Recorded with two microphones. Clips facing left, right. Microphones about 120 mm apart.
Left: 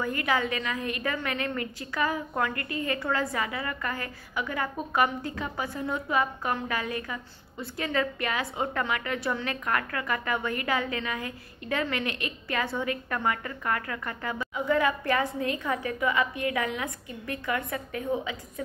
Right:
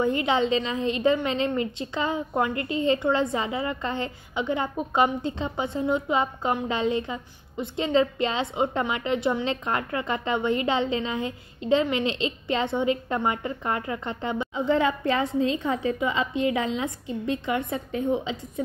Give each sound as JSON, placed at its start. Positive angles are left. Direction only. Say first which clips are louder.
{"t": 0.0, "sound": "a woman's voice", "louder": "right 5 dB", "side_deg": -25}